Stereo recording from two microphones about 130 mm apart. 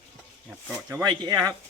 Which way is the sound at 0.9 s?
30° right (ahead or behind).